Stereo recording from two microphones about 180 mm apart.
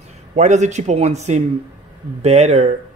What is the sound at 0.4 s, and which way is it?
Speech, 40° right (ahead or behind).